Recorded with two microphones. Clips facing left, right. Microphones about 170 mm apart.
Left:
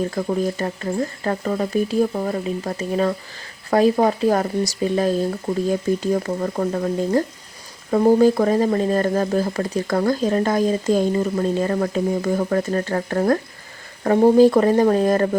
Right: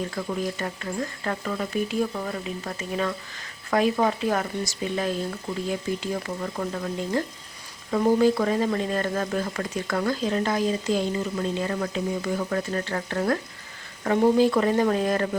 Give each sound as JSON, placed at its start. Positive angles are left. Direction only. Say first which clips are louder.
{"t": 0.1, "sound": "speech", "louder": "left 7 dB", "side_deg": 40}